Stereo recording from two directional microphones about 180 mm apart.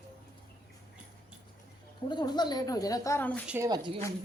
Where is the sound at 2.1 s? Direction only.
25° left (ahead or behind).